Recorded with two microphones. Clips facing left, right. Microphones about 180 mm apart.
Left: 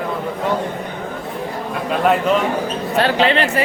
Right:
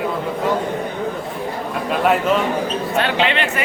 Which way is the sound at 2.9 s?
35° left (ahead or behind).